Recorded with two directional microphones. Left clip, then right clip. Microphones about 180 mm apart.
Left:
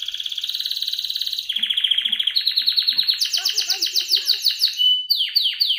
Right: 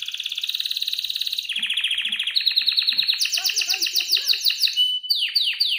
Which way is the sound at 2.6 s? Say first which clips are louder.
Left 1 dB; 30° right (ahead or behind).